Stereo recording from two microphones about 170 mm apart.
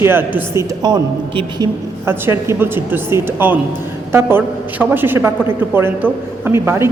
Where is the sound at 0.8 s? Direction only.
25° right (ahead or behind).